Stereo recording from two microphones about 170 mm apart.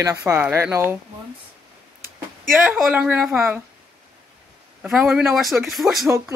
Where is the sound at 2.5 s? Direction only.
5° right (ahead or behind).